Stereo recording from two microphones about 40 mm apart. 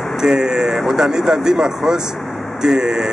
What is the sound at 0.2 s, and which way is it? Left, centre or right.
Speech, centre.